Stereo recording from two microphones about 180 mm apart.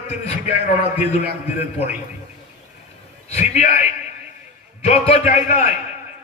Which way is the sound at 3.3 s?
40° left (ahead or behind).